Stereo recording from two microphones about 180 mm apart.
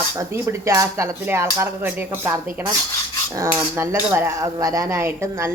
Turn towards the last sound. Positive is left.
turn(degrees=-15)  # may be behind; listen again after turning